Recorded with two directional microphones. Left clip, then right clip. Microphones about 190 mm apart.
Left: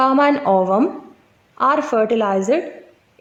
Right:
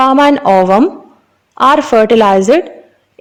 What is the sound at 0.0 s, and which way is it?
A woman's voice, 45° right (ahead or behind).